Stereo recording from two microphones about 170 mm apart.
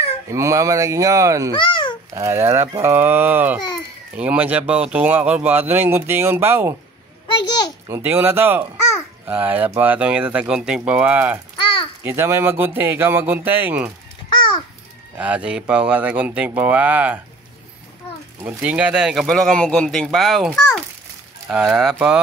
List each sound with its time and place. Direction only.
0.3 s speech: 20° right (ahead or behind)
1.6 s a child's voice: 30° left (ahead or behind)
2.1 s speech: 15° right (ahead or behind)
7.3 s a sound: 25° left (ahead or behind)
7.9 s speech: 15° right (ahead or behind)
11.5 s a sound: 30° left (ahead or behind)
12.0 s speech: 15° right (ahead or behind)
14.3 s babbling: 25° left (ahead or behind)
15.1 s speech: 10° right (ahead or behind)
18.4 s speech: 10° right (ahead or behind)